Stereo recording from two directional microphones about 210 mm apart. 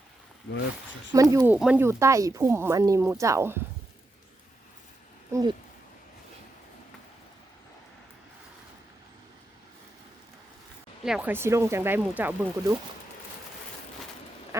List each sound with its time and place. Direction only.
1.1 s speech: 15° right (ahead or behind)
5.3 s speech: 20° right (ahead or behind)
11.0 s speech: 5° right (ahead or behind)
14.5 s quack: 15° right (ahead or behind)